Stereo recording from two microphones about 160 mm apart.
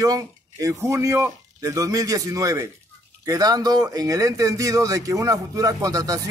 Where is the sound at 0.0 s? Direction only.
20° right (ahead or behind).